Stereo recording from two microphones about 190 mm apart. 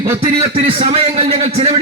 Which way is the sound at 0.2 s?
30° right (ahead or behind).